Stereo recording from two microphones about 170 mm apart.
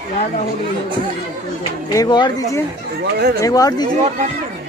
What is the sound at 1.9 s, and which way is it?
Speech, 25° left (ahead or behind).